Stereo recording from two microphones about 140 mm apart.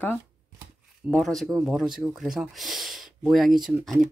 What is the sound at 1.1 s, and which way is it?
Speech, centre (ahead or behind).